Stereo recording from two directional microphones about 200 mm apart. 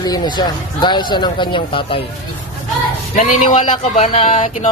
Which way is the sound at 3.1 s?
35° left (ahead or behind).